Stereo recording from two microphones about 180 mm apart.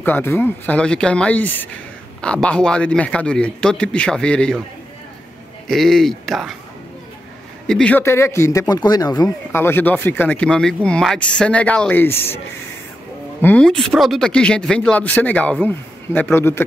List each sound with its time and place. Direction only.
0.0 s a man's voice: 10° left (ahead or behind)
5.7 s a man's voice: centre (ahead or behind)
7.6 s speech: 5° left (ahead or behind)
13.4 s a man's voice: 10° left (ahead or behind)